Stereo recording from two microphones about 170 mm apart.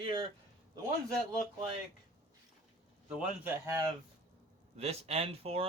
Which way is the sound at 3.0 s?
5° right (ahead or behind).